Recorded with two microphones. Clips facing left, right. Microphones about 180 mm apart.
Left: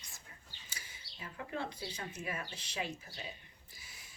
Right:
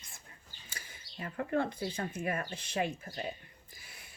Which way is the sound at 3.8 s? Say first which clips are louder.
Right 3 dB; 60° right (ahead or behind).